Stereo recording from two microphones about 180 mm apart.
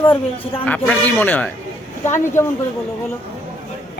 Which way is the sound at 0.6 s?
10° left (ahead or behind).